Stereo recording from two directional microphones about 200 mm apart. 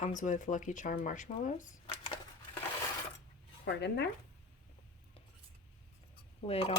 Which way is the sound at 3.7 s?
60° left (ahead or behind).